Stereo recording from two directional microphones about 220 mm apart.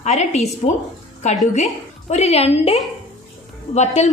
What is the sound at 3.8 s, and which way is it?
Speech, 30° left (ahead or behind).